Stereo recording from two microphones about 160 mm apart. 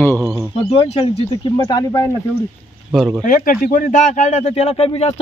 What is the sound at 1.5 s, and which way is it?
Speech, 20° left (ahead or behind).